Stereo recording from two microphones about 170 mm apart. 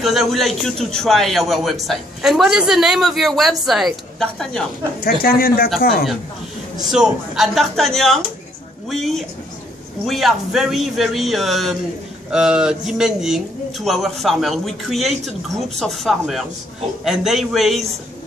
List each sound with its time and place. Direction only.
0.0 s a man's voice: centre (ahead or behind)
5.0 s speech: 60° left (ahead or behind)
6.9 s a man's voice: centre (ahead or behind)